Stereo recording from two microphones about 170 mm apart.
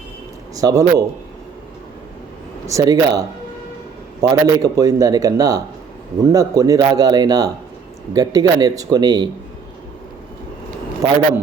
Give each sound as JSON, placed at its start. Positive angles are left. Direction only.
{"t": 0.5, "sound": "a man's voice", "side_deg": -20}
{"t": 2.6, "sound": "speech", "side_deg": -20}